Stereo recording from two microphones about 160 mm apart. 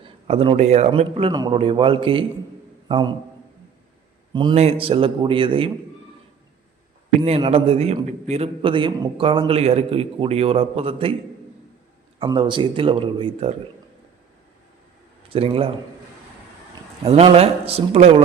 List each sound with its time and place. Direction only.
0.0 s a man's voice: 35° right (ahead or behind)
4.3 s a man's voice: 30° right (ahead or behind)
7.3 s a man's voice: 35° right (ahead or behind)
12.2 s a man's voice: 30° right (ahead or behind)
15.3 s a man's voice: 35° right (ahead or behind)
17.0 s a man's voice: 40° right (ahead or behind)